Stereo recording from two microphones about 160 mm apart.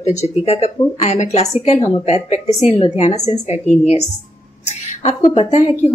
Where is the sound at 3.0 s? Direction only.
45° left (ahead or behind).